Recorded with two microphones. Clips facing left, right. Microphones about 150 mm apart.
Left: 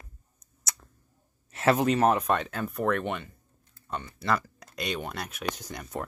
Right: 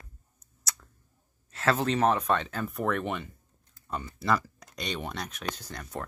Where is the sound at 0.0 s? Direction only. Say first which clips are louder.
Left 1 dB; 20° left (ahead or behind).